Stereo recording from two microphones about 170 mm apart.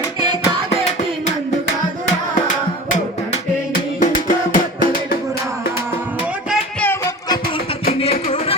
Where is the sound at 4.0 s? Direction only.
50° left (ahead or behind).